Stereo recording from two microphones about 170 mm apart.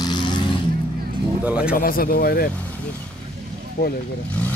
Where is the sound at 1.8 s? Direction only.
60° left (ahead or behind).